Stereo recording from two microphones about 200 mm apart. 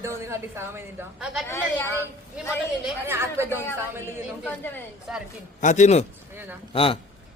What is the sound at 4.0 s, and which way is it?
A woman's voice, 10° left (ahead or behind).